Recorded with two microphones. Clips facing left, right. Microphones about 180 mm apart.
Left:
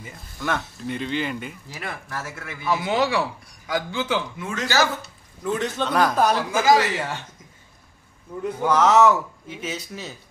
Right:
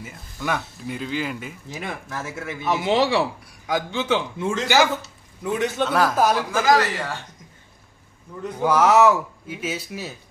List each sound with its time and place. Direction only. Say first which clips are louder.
0.0 s speech: right 1 dB; 5° right (ahead or behind)
1.7 s speech: right 5 dB; 20° right (ahead or behind)
5.4 s speech: right 2 dB; 10° right (ahead or behind)
6.5 s speech: left 1 dB; 15° left (ahead or behind)
8.5 s speech: right 1 dB; 10° right (ahead or behind)